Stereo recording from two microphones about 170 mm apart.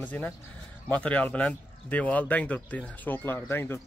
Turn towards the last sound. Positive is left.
turn(degrees=15)  # may be behind; listen again after turning